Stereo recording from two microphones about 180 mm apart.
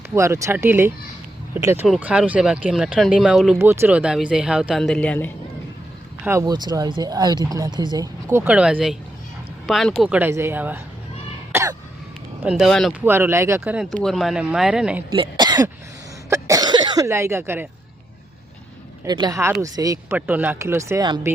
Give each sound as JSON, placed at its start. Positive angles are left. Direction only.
{"t": 0.1, "sound": "speech", "side_deg": -15}
{"t": 3.6, "sound": "speech", "side_deg": -15}
{"t": 6.2, "sound": "speech", "side_deg": -20}
{"t": 11.5, "sound": "throat clearing", "side_deg": -20}
{"t": 12.4, "sound": "speech", "side_deg": -5}
{"t": 13.1, "sound": "speech", "side_deg": -10}
{"t": 13.9, "sound": "speech", "side_deg": 0}
{"t": 15.1, "sound": "speech", "side_deg": -25}
{"t": 19.0, "sound": "speech", "side_deg": -20}